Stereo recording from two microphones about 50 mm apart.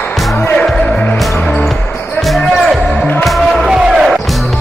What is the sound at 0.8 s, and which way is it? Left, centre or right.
Music, left.